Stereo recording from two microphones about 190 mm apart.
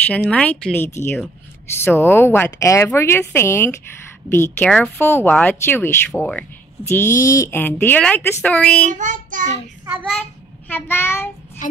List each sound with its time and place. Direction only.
0.0 s speech: 5° left (ahead or behind)
8.9 s child singing: 40° right (ahead or behind)
10.7 s speech: 10° left (ahead or behind)
11.6 s speech: 40° left (ahead or behind)